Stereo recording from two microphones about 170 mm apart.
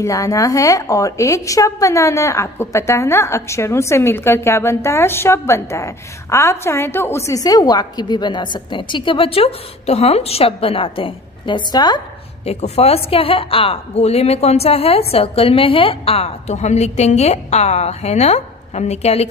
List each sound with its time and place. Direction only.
0.0 s a woman's voice: 20° left (ahead or behind)
12.4 s a woman's voice: 40° left (ahead or behind)